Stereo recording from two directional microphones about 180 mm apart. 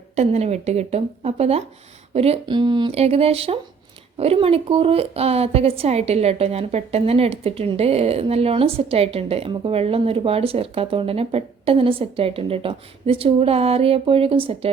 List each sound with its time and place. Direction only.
0.2 s a woman's voice: 40° right (ahead or behind)